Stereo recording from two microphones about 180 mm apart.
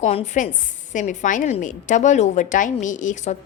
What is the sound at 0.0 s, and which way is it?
A woman's voice, 35° left (ahead or behind).